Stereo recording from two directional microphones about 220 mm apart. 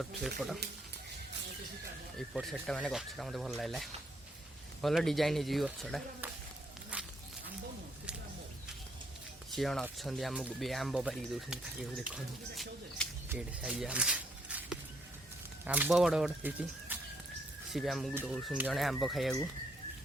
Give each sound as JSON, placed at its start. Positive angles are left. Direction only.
{"t": 0.0, "sound": "speech", "side_deg": 0}
{"t": 2.1, "sound": "speech", "side_deg": 0}
{"t": 6.9, "sound": "walk", "side_deg": -5}
{"t": 9.6, "sound": "speech", "side_deg": 0}
{"t": 13.2, "sound": "a sound", "side_deg": -10}
{"t": 15.6, "sound": "speech", "side_deg": -5}